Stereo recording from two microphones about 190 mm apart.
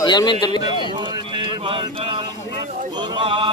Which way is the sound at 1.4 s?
25° right (ahead or behind).